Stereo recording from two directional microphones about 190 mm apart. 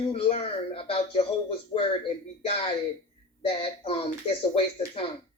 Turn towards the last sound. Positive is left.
turn(degrees=30)  # may be behind; listen again after turning